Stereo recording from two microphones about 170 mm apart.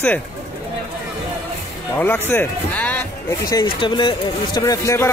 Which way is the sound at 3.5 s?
30° left (ahead or behind).